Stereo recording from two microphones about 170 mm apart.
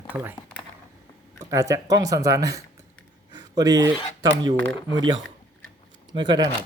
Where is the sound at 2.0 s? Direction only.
20° right (ahead or behind).